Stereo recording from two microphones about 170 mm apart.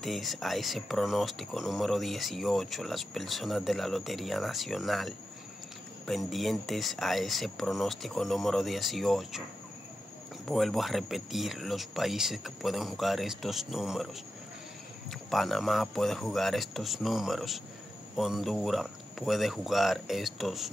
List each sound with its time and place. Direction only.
0.0 s speech: centre (ahead or behind)
10.5 s speech: centre (ahead or behind)
15.0 s speech: centre (ahead or behind)